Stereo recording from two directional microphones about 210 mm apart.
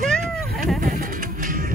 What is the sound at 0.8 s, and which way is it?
Music, 40° right (ahead or behind).